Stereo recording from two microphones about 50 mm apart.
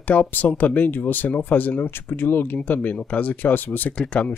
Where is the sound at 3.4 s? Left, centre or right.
Left.